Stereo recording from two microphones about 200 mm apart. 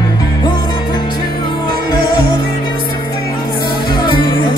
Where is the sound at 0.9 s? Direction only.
25° left (ahead or behind).